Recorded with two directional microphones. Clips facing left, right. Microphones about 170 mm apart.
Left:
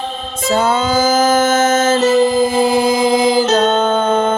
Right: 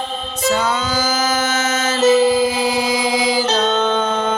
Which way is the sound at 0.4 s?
50° left (ahead or behind).